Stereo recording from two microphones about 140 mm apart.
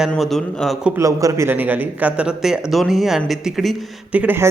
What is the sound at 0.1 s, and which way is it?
Speech, centre (ahead or behind).